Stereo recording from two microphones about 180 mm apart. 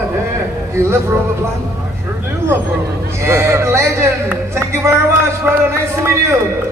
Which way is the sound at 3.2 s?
15° right (ahead or behind).